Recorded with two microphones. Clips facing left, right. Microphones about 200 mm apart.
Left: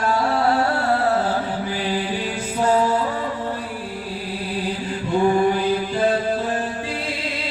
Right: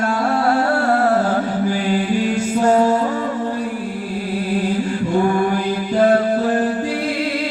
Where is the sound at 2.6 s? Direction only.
45° right (ahead or behind).